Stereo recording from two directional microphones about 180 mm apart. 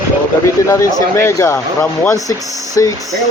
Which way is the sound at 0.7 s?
15° left (ahead or behind).